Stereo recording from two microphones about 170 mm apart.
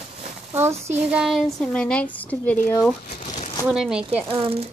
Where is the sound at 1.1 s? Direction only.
Centre (ahead or behind).